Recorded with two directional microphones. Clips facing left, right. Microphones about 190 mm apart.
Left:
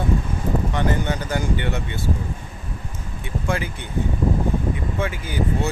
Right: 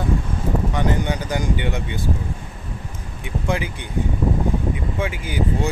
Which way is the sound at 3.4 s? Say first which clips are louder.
Right 1 dB; 15° right (ahead or behind).